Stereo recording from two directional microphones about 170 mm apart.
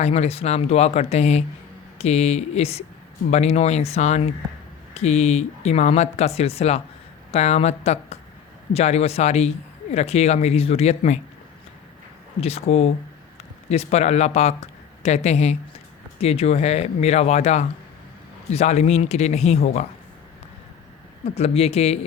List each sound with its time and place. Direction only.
0.0 s speech: 40° left (ahead or behind)
12.4 s speech: 35° left (ahead or behind)
21.2 s speech: 35° left (ahead or behind)